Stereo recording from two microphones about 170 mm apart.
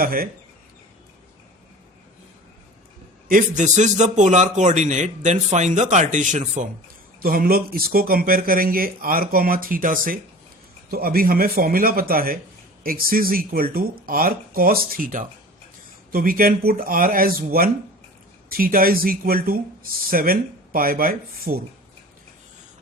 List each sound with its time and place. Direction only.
0.0 s speech: 60° right (ahead or behind)
3.2 s speech: 50° right (ahead or behind)